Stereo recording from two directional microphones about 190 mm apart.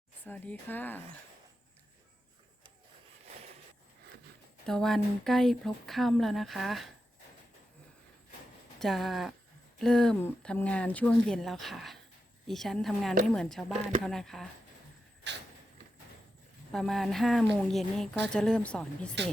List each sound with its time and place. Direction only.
0.3 s speech: 10° left (ahead or behind)
4.6 s speech: centre (ahead or behind)
8.8 s speech: centre (ahead or behind)
15.3 s vehicle: 65° right (ahead or behind)
16.7 s speech: centre (ahead or behind)